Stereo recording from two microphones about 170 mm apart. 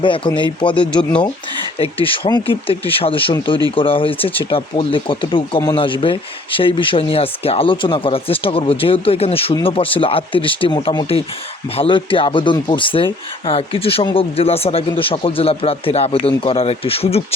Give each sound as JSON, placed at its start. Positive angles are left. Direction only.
{"t": 0.0, "sound": "speech", "side_deg": 30}